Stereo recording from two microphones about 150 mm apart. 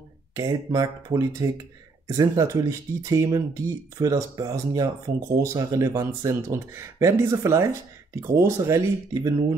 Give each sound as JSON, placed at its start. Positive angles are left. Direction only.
{"t": 0.4, "sound": "speech", "side_deg": -25}